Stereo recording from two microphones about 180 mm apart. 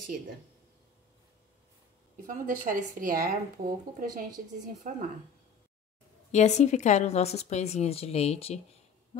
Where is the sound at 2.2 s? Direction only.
45° right (ahead or behind).